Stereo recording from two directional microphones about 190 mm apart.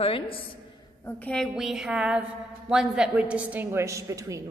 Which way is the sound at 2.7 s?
5° right (ahead or behind).